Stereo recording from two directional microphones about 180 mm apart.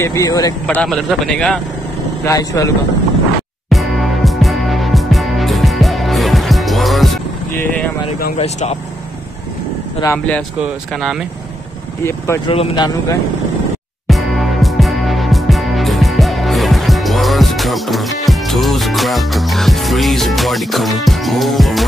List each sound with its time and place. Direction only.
0.0 s speech: 20° left (ahead or behind)
0.7 s a man's voice: 5° left (ahead or behind)
2.2 s speech: 20° left (ahead or behind)
3.7 s music: centre (ahead or behind)
7.5 s vehicle: 10° left (ahead or behind)
8.4 s speech: 35° left (ahead or behind)
10.0 s speech: 10° left (ahead or behind)
12.0 s speech: 15° left (ahead or behind)
12.4 s speech: 25° left (ahead or behind)
14.0 s music: centre (ahead or behind)